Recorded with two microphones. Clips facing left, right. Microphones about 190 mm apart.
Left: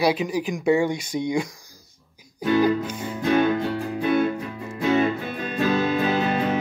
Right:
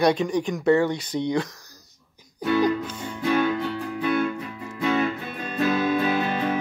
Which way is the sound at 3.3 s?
25° left (ahead or behind).